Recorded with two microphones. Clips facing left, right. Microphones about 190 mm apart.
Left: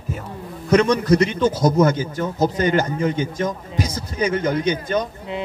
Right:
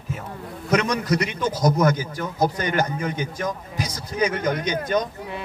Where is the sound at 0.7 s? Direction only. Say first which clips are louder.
Left 6 dB; 30° left (ahead or behind).